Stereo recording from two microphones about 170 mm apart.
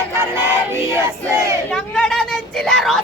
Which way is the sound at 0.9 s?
15° right (ahead or behind).